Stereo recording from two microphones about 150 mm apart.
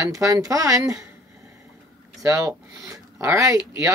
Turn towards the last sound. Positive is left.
turn(degrees=-20)  # may be behind; listen again after turning